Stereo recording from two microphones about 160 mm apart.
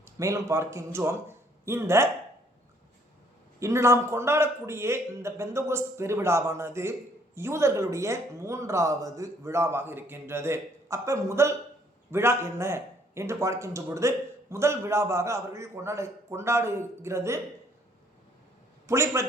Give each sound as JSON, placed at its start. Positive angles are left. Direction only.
{"t": 0.0, "sound": "a man's voice", "side_deg": -20}
{"t": 3.6, "sound": "speech", "side_deg": -20}
{"t": 18.9, "sound": "speech", "side_deg": -20}